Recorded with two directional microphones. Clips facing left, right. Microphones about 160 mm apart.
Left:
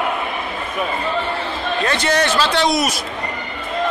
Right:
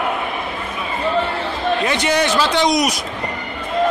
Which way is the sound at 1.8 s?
15° right (ahead or behind).